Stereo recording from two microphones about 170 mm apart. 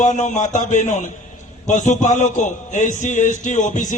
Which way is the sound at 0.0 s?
45° left (ahead or behind).